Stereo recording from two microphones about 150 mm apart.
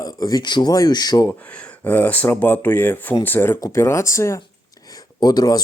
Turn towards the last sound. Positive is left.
turn(degrees=25)  # may be behind; listen again after turning